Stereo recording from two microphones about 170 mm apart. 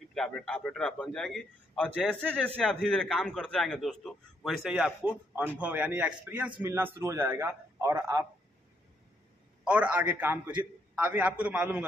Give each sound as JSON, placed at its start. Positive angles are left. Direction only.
{"t": 0.1, "sound": "a man's voice", "side_deg": 0}
{"t": 9.7, "sound": "a man's voice", "side_deg": -10}